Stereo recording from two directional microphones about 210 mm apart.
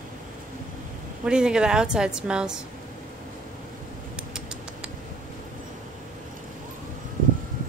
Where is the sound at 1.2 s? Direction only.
5° right (ahead or behind).